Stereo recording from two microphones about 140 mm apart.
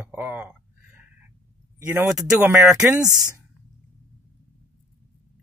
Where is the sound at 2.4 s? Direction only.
15° right (ahead or behind).